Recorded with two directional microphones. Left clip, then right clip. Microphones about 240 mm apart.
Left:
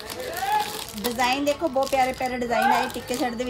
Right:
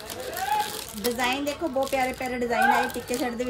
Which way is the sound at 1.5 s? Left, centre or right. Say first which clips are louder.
Left 4 dB; centre.